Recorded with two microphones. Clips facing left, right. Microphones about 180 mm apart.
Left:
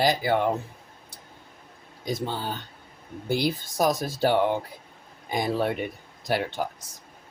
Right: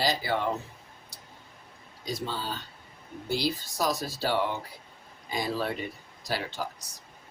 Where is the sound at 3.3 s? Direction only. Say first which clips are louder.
Left 4 dB; 55° left (ahead or behind).